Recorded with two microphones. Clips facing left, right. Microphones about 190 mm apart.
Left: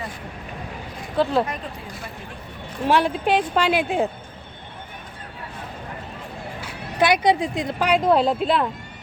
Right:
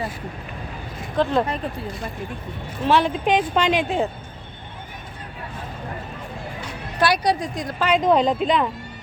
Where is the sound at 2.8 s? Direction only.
10° left (ahead or behind).